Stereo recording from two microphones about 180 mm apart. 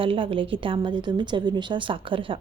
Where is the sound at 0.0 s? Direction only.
30° right (ahead or behind).